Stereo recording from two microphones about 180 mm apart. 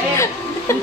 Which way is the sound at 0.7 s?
15° left (ahead or behind).